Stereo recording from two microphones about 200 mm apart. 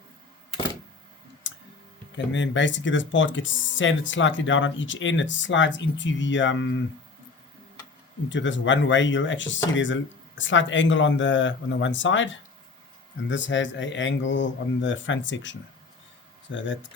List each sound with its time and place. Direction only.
1.5 s clicking: 65° left (ahead or behind)
2.1 s speech: 65° left (ahead or behind)
8.3 s speech: 65° left (ahead or behind)